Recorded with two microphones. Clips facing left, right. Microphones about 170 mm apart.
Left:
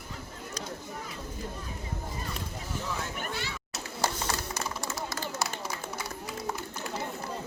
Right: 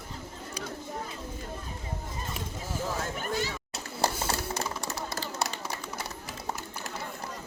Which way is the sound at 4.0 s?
30° right (ahead or behind).